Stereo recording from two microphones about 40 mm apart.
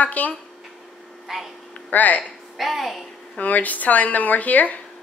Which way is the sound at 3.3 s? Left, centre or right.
Left.